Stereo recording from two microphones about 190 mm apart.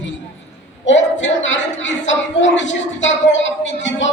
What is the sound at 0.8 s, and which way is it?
Speech, 75° left (ahead or behind).